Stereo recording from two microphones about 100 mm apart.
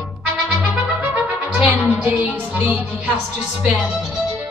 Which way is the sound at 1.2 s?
20° right (ahead or behind).